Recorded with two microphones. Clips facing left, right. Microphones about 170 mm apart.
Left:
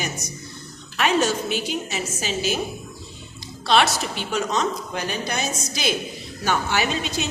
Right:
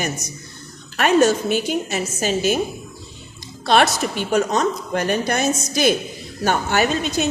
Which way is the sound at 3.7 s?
50° right (ahead or behind).